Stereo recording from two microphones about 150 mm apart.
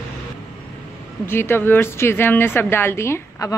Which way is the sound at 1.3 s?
15° left (ahead or behind).